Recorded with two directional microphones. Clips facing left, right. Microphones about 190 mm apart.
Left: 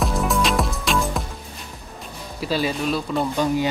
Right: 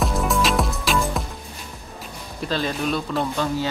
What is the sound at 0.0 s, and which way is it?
Music, centre (ahead or behind).